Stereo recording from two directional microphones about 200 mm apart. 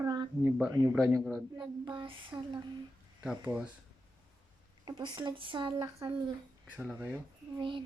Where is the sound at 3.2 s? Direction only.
5° right (ahead or behind).